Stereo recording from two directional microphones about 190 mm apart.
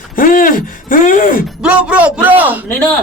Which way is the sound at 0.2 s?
45° left (ahead or behind).